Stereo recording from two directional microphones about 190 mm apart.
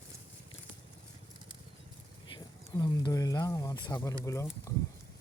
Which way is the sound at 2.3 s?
20° left (ahead or behind).